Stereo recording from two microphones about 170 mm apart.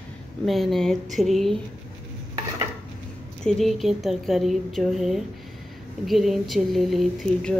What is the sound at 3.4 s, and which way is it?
A woman's voice, centre (ahead or behind).